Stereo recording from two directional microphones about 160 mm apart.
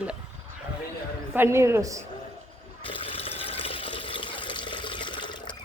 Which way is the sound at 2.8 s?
35° left (ahead or behind).